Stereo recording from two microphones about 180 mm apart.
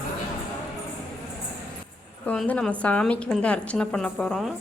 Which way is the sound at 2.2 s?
5° left (ahead or behind).